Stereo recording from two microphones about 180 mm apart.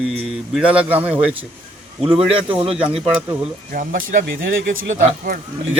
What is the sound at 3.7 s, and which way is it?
Speech, 50° right (ahead or behind).